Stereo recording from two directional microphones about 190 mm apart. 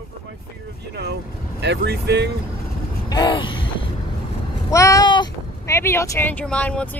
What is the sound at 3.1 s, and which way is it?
Vehicle, 25° left (ahead or behind).